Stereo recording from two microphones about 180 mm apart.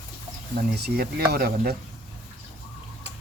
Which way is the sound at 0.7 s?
60° right (ahead or behind).